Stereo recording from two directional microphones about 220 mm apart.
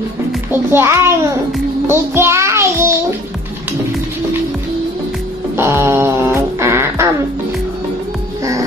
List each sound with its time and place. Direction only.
0.5 s a child's voice: 10° right (ahead or behind)
1.5 s music: 10° right (ahead or behind)
5.6 s music: 10° right (ahead or behind)